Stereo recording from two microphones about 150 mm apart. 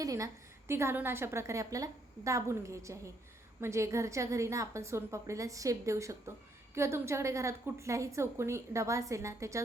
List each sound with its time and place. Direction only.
0.0 s a woman's voice: 20° right (ahead or behind)